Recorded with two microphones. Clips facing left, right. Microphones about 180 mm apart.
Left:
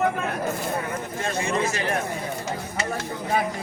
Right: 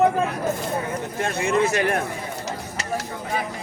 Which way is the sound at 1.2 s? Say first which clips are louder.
Right 4 dB; 60° right (ahead or behind).